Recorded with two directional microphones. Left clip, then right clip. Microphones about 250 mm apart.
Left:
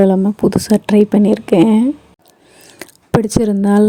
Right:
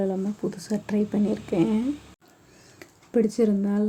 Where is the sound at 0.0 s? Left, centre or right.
Left.